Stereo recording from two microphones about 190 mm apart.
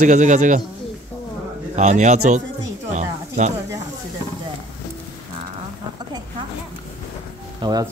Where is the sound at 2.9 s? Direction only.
40° right (ahead or behind).